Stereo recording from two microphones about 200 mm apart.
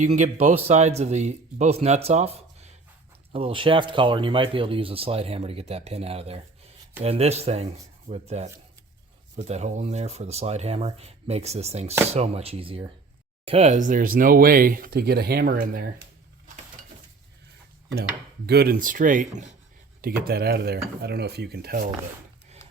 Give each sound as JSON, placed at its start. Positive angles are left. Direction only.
{"t": 0.0, "sound": "a man's voice", "side_deg": -35}
{"t": 18.4, "sound": "speech", "side_deg": -50}